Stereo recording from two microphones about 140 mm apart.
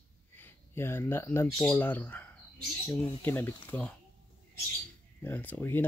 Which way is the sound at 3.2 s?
15° left (ahead or behind).